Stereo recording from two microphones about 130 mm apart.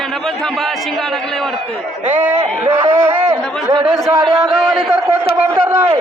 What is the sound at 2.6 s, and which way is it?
A man's voice, 20° right (ahead or behind).